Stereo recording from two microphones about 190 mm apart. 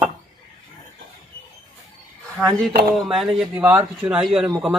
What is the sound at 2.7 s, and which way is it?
Speech, 55° right (ahead or behind).